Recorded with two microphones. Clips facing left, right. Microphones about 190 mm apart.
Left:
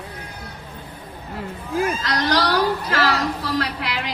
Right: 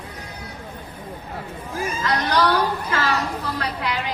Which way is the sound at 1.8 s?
75° left (ahead or behind).